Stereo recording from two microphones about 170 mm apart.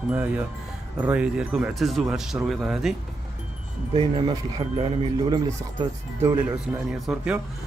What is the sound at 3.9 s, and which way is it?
Speech, 30° right (ahead or behind).